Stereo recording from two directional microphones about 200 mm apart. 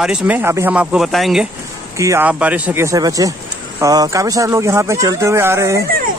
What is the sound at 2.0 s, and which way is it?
Speech, 15° right (ahead or behind).